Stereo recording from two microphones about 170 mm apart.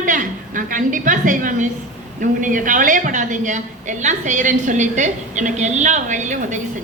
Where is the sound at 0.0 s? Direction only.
50° right (ahead or behind).